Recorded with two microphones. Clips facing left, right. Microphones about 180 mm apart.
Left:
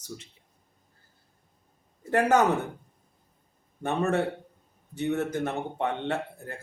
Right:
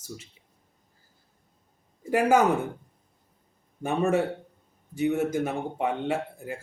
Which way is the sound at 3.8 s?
10° right (ahead or behind).